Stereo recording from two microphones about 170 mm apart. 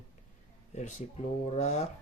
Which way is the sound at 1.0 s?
40° left (ahead or behind).